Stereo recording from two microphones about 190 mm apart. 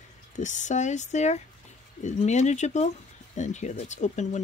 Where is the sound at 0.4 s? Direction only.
40° left (ahead or behind).